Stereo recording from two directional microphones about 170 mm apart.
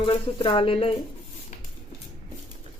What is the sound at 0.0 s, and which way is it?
Speech, 30° left (ahead or behind).